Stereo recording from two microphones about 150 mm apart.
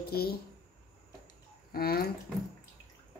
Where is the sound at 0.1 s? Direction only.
90° left.